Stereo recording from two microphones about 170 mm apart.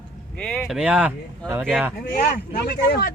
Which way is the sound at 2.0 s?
55° left (ahead or behind).